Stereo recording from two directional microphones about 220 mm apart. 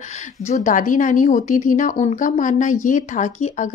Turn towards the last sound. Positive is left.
turn(degrees=35)  # may be behind; listen again after turning